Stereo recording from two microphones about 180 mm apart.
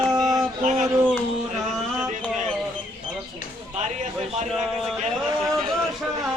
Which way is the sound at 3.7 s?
40° right (ahead or behind).